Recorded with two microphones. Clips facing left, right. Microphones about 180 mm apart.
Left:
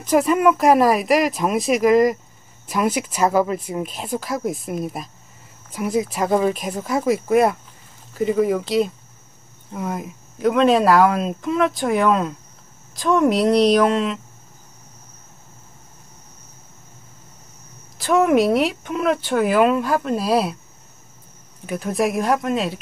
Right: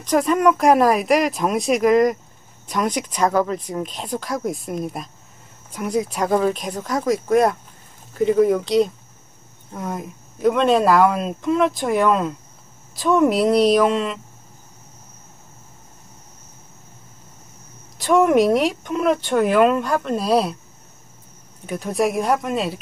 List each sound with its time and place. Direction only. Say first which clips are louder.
0.0 s speech: left 1 dB; 5° left (ahead or behind)
17.9 s speech: right 1 dB; centre (ahead or behind)
21.6 s speech: even; centre (ahead or behind)